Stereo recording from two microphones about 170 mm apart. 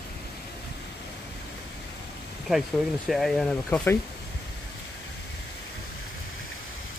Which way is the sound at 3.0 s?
Centre (ahead or behind).